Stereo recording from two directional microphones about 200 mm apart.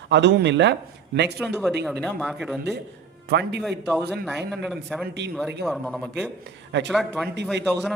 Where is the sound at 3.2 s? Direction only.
55° right (ahead or behind).